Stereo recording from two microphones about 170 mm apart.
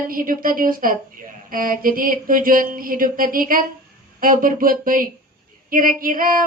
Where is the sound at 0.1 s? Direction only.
55° right (ahead or behind).